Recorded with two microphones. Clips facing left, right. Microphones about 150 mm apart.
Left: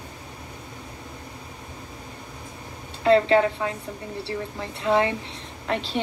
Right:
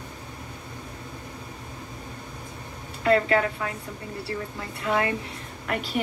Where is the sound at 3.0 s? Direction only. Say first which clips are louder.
Left 4 dB; 25° left (ahead or behind).